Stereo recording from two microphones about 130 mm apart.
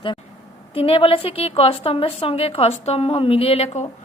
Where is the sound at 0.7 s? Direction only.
45° left (ahead or behind).